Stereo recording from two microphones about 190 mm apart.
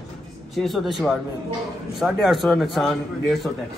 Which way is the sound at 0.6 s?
Centre (ahead or behind).